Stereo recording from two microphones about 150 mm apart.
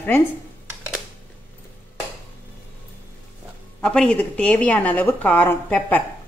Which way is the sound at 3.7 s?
5° left (ahead or behind).